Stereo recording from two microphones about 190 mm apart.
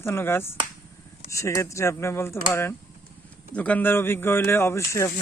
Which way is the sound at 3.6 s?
5° left (ahead or behind).